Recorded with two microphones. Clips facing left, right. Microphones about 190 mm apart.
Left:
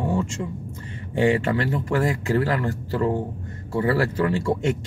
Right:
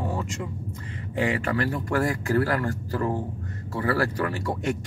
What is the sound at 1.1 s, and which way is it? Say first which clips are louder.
Speech: left 5 dB; 30° left (ahead or behind).